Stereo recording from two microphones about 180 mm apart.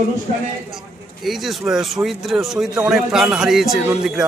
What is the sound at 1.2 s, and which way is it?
Speech, centre (ahead or behind).